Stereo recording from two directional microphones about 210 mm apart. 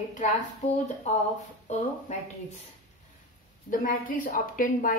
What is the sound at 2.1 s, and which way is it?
Speech, 35° left (ahead or behind).